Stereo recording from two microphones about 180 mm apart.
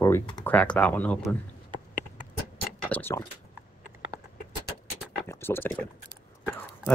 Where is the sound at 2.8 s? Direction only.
10° left (ahead or behind).